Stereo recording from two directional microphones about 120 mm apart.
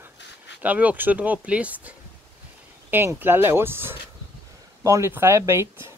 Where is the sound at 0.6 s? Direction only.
10° right (ahead or behind).